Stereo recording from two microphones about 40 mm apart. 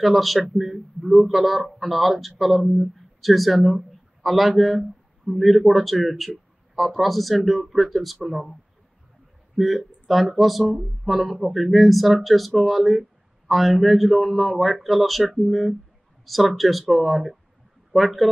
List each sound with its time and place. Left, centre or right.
0.0 s speech: centre
9.6 s speech: centre